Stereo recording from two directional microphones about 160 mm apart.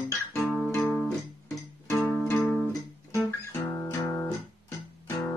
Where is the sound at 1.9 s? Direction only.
15° left (ahead or behind).